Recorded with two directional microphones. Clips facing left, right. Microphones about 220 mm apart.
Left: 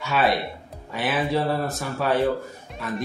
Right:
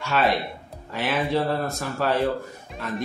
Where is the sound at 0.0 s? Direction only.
Centre (ahead or behind).